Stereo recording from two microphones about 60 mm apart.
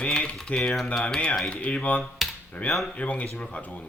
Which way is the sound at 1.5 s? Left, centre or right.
Left.